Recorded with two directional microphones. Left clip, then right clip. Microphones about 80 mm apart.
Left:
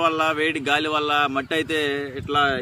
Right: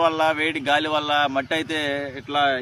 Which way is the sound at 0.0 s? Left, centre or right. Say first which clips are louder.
Right 1 dB; right.